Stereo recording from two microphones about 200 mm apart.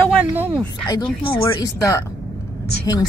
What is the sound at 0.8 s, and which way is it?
A woman's voice, 20° left (ahead or behind).